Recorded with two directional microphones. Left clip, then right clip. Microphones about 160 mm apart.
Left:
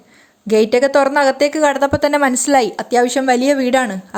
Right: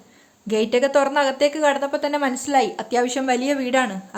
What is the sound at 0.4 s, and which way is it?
Speech, 35° left (ahead or behind).